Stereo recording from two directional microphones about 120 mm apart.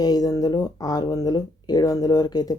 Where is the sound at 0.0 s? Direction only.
30° left (ahead or behind).